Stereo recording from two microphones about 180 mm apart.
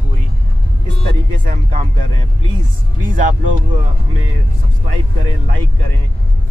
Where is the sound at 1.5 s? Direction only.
40° right (ahead or behind).